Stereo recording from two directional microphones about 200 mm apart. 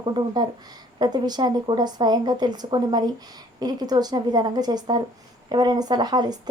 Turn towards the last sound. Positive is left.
turn(degrees=-20)  # may be behind; listen again after turning